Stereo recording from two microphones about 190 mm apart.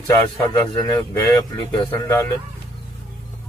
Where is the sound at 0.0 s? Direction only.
15° left (ahead or behind).